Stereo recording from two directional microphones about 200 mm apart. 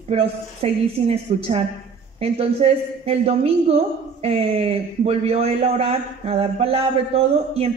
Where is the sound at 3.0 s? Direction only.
30° right (ahead or behind).